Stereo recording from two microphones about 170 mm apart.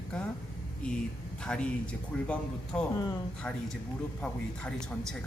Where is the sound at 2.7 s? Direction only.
5° left (ahead or behind).